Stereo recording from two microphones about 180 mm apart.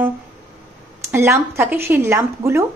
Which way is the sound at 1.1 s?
15° right (ahead or behind).